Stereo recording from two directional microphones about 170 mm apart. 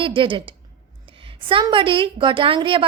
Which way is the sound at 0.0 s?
30° right (ahead or behind).